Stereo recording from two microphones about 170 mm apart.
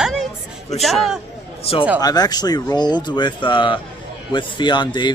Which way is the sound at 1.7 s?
35° left (ahead or behind).